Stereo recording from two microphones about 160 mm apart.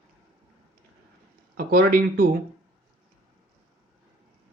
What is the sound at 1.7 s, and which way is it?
Speech, 65° right (ahead or behind).